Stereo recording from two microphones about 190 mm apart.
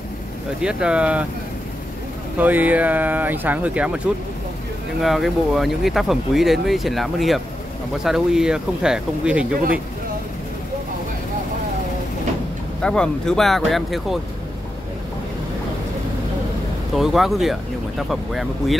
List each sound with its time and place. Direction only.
0.6 s speech: 5° right (ahead or behind)
2.3 s speech: 10° right (ahead or behind)
12.8 s speech: 5° left (ahead or behind)
16.9 s speech: centre (ahead or behind)